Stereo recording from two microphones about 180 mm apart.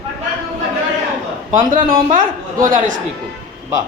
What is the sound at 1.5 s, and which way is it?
A woman's voice, 45° right (ahead or behind).